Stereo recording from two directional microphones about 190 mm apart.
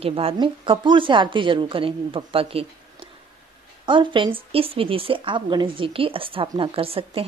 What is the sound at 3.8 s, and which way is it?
A woman's voice, 25° right (ahead or behind).